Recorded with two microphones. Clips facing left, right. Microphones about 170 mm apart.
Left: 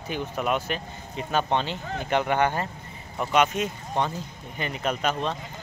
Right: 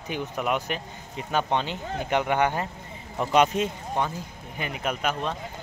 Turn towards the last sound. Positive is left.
turn(degrees=-10)  # may be behind; listen again after turning